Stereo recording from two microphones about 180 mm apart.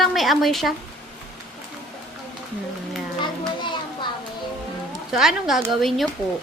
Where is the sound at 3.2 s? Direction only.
25° left (ahead or behind).